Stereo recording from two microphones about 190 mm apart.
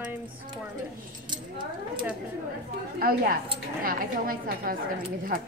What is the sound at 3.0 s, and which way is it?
A woman's voice, 50° right (ahead or behind).